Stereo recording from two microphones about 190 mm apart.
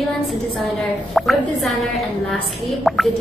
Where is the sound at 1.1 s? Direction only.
Centre (ahead or behind).